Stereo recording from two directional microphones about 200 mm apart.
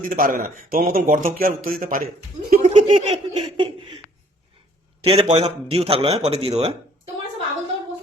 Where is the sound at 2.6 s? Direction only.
35° right (ahead or behind).